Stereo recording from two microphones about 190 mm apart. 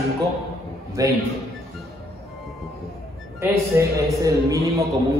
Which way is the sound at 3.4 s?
15° right (ahead or behind).